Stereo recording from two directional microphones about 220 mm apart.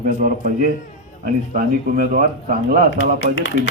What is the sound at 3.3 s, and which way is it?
Speech, 55° left (ahead or behind).